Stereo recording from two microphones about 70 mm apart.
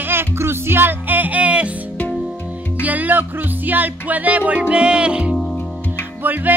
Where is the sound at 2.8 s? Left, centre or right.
Right.